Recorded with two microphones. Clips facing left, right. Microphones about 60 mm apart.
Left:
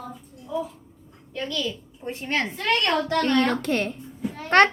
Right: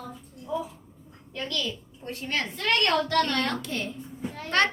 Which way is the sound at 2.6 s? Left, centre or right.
Centre.